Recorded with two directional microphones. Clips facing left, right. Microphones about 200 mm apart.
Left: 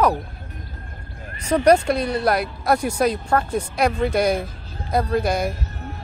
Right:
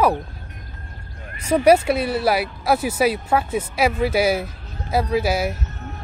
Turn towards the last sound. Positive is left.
turn(degrees=-5)  # may be behind; listen again after turning